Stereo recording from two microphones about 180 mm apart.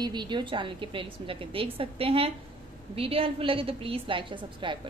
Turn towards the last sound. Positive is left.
turn(degrees=-25)  # may be behind; listen again after turning